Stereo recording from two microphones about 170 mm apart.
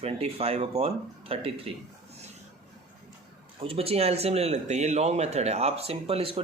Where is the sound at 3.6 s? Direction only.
35° right (ahead or behind).